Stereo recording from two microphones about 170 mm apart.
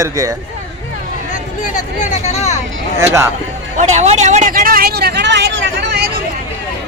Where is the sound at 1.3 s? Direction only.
50° left (ahead or behind).